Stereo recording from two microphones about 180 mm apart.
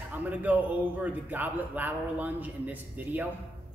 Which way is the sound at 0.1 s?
10° right (ahead or behind).